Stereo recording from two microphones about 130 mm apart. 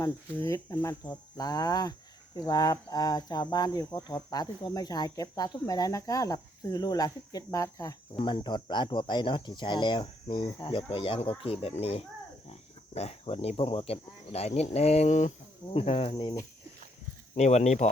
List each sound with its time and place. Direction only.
0.0 s speech: 30° left (ahead or behind); by 15.3 s 60° left (ahead or behind)
15.7 s speech: 45° left (ahead or behind)
17.3 s speech: 60° left (ahead or behind)